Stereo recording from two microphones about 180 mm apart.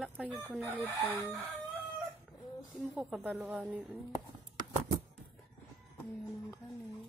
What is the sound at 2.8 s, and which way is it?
A woman's voice, 5° right (ahead or behind).